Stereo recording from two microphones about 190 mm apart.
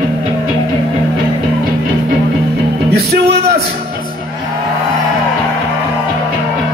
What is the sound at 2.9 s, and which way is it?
Music, 60° right (ahead or behind).